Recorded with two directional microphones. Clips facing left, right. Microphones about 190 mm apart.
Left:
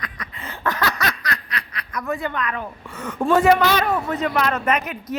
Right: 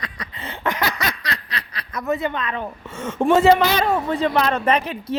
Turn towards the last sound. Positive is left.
turn(degrees=-30)  # may be behind; listen again after turning